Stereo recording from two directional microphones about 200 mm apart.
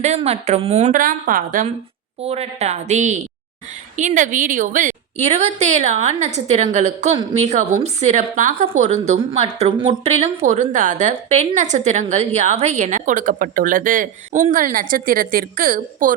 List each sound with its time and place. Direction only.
0.0 s a woman's voice: 35° right (ahead or behind)